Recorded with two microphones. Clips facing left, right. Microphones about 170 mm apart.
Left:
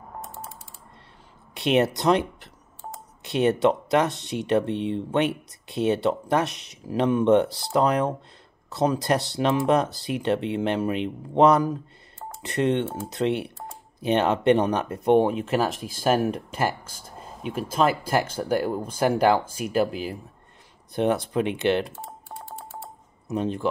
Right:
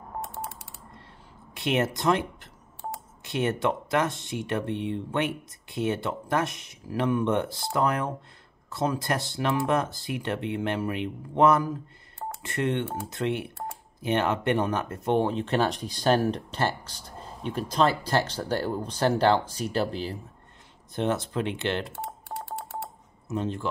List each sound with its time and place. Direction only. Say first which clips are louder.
0.2 s typing: right 4 dB; 65° right (ahead or behind)
1.5 s speech: left 5 dB; 20° left (ahead or behind)
21.9 s telephone dialing: right 3 dB; 70° right (ahead or behind)
23.2 s speech: left 4 dB; 15° left (ahead or behind)